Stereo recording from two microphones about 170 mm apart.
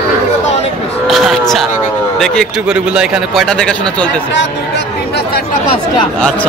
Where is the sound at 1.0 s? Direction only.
Centre (ahead or behind).